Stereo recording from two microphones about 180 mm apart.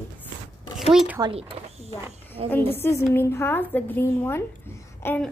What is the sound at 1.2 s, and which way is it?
Speech, 20° right (ahead or behind).